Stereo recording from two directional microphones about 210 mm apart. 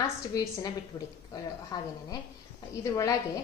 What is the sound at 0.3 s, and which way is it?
A woman's voice, 15° left (ahead or behind).